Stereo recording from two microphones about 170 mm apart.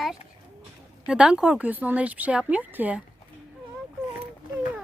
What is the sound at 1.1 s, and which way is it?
Speech, 5° right (ahead or behind).